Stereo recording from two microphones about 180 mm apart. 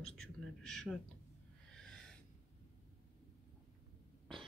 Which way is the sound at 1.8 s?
5° left (ahead or behind).